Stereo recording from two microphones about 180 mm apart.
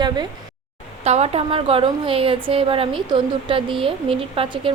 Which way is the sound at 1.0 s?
35° right (ahead or behind).